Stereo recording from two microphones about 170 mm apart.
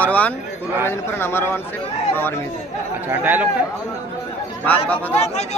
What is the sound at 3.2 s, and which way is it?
Speech, 10° right (ahead or behind).